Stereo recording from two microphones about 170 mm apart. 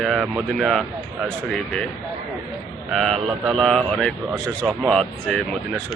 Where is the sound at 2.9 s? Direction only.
Centre (ahead or behind).